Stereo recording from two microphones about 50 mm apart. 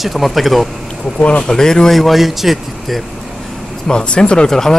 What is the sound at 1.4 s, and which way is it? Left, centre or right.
Speech, centre.